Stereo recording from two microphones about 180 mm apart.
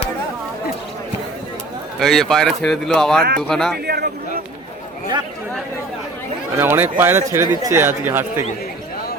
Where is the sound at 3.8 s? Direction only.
60° right (ahead or behind).